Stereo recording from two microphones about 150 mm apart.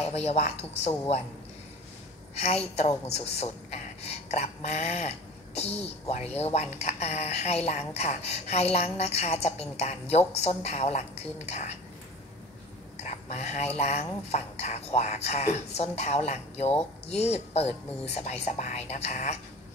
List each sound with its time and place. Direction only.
0.0 s a woman's voice: 45° left (ahead or behind)
2.3 s a woman's voice: 45° left (ahead or behind)
12.9 s a sound: 50° left (ahead or behind)
13.7 s a woman's voice: 45° left (ahead or behind)